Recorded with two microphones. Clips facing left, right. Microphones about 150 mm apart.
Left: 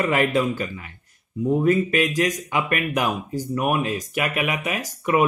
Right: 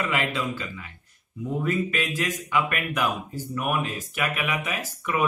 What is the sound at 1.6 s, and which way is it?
Speech, 40° left (ahead or behind).